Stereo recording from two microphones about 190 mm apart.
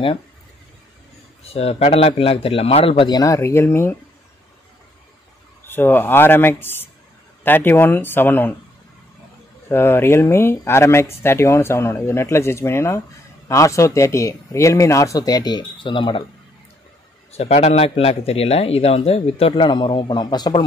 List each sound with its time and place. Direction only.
1.4 s a man's voice: 30° left (ahead or behind); by 3.9 s 15° left (ahead or behind)
5.7 s speech: 10° left (ahead or behind)
9.7 s speech: 10° left (ahead or behind)
17.3 s a man's voice: 35° left (ahead or behind)